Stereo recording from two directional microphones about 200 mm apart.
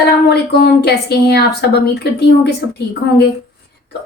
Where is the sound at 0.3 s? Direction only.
55° left (ahead or behind).